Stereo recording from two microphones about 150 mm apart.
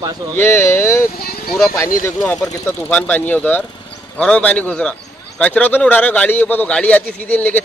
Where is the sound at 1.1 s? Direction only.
90° left.